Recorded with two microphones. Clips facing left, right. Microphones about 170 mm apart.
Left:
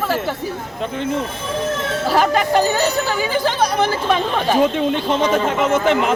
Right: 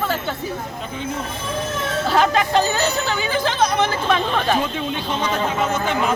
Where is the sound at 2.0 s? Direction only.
10° left (ahead or behind).